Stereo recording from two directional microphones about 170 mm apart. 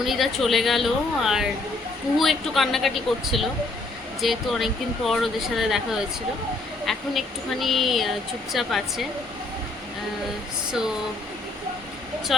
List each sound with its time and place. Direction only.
0.0 s speech: centre (ahead or behind)
6.8 s speech: centre (ahead or behind)
10.7 s speech: 5° right (ahead or behind)
12.3 s speech: centre (ahead or behind)